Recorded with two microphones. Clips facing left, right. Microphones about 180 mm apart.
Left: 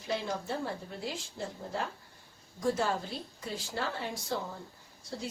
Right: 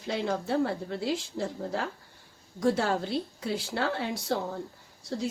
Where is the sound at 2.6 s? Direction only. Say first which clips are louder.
Right 4 dB; 80° right.